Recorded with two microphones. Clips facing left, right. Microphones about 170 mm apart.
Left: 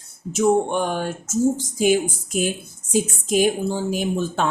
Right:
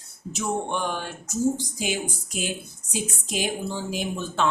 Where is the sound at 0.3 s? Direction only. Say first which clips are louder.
Left 9 dB; 50° left (ahead or behind).